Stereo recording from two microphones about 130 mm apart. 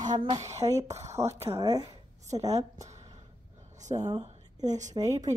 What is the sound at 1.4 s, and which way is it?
Speech, 25° right (ahead or behind).